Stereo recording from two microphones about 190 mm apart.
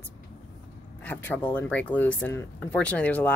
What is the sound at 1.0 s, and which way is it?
Speech, 10° left (ahead or behind).